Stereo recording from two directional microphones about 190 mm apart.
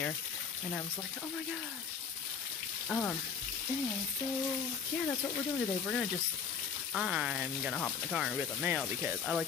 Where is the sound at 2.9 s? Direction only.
5° left (ahead or behind).